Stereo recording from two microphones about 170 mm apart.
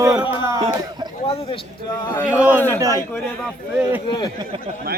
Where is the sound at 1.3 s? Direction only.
35° left (ahead or behind).